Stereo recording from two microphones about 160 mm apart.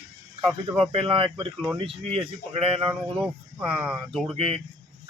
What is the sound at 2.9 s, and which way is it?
Speech, 5° right (ahead or behind).